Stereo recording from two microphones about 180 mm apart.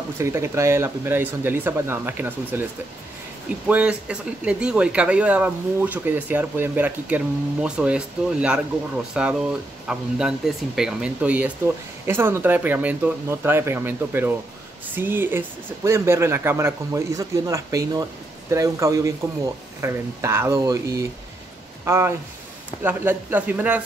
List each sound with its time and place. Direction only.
0.2 s speech: 15° right (ahead or behind)
3.6 s speech: 5° right (ahead or behind)